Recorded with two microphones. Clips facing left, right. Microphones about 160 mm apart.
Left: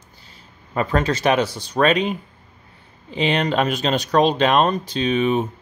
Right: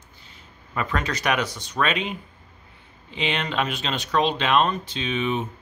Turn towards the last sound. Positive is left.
turn(degrees=40)  # may be behind; listen again after turning